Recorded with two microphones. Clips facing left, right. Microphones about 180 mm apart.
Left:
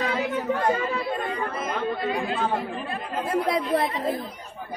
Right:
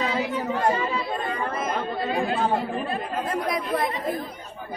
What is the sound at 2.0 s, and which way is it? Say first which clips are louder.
Speech: right 2 dB; 30° right (ahead or behind).